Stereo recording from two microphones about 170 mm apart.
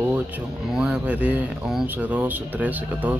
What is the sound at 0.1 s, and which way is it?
Speech, 5° right (ahead or behind).